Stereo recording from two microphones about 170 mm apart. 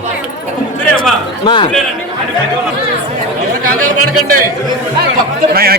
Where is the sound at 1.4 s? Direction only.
30° left (ahead or behind).